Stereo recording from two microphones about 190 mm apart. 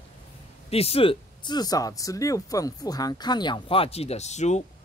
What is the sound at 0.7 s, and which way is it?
Speech, 30° left (ahead or behind).